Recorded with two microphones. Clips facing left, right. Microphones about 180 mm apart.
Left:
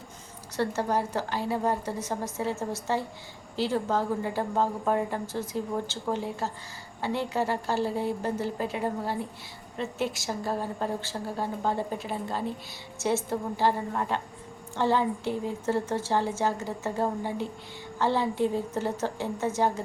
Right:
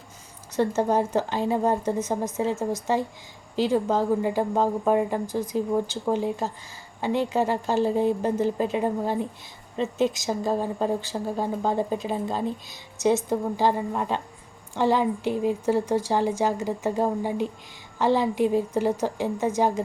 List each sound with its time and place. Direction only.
0.5 s a woman's voice: 20° right (ahead or behind)